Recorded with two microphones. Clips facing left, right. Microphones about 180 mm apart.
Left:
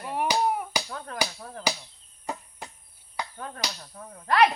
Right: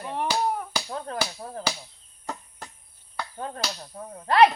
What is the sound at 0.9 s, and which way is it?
Chop, 30° right (ahead or behind).